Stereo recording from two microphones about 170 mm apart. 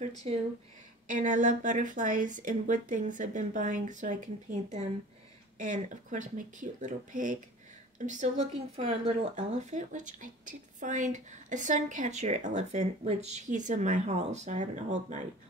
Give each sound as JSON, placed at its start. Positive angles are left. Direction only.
{"t": 1.0, "sound": "speech", "side_deg": -50}